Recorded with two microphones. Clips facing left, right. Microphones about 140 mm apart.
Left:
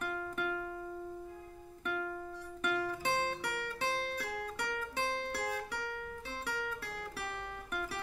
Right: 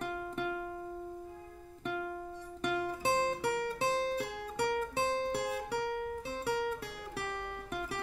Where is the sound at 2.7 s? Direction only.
20° right (ahead or behind).